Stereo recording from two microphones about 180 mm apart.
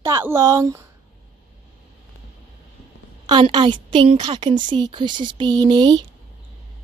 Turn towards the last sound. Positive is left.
turn(degrees=-25)  # may be behind; listen again after turning